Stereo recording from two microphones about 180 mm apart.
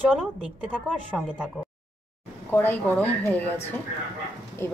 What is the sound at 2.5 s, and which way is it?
Speech, 10° left (ahead or behind).